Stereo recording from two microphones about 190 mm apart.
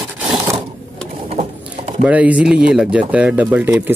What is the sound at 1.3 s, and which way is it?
Pigeon, 35° right (ahead or behind).